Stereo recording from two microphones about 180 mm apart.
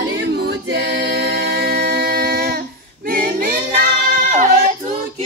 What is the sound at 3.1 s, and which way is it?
Choir, 50° right (ahead or behind).